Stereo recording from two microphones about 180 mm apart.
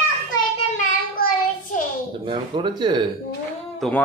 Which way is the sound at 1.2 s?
55° left (ahead or behind).